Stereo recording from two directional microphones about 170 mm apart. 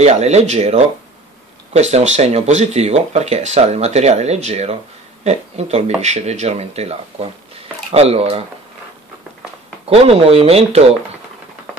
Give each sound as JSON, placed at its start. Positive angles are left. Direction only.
{"t": 0.0, "sound": "speech", "side_deg": -40}
{"t": 9.8, "sound": "speech", "side_deg": -35}